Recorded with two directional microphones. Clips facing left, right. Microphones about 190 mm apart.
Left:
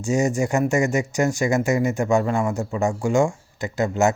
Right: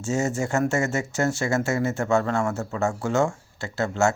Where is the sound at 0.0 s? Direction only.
15° left (ahead or behind).